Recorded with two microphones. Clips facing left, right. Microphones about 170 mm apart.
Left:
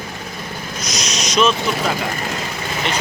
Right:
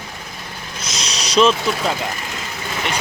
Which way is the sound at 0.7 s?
30° right (ahead or behind).